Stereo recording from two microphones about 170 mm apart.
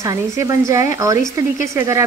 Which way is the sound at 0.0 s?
20° right (ahead or behind).